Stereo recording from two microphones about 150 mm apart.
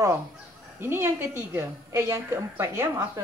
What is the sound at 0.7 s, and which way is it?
A woman's voice, 15° right (ahead or behind).